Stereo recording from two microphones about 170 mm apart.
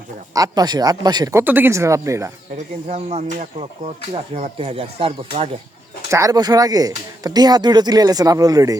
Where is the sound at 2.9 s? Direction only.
40° right (ahead or behind).